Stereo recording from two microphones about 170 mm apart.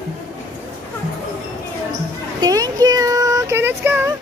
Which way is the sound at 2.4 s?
20° right (ahead or behind).